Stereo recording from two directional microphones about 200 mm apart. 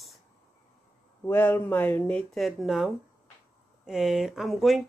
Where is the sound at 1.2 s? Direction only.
10° left (ahead or behind).